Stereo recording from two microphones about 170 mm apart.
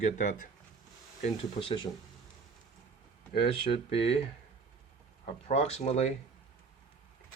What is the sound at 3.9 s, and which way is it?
Speech, 35° left (ahead or behind).